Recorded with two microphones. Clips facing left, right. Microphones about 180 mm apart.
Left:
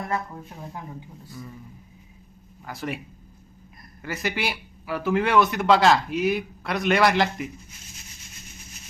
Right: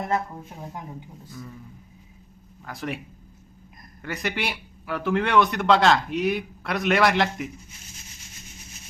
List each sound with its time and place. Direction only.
0.0 s speech: 25° right (ahead or behind)
2.6 s speech: centre (ahead or behind)
4.0 s speech: centre (ahead or behind)